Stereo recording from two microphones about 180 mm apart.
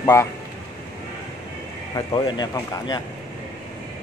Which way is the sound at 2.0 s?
25° left (ahead or behind).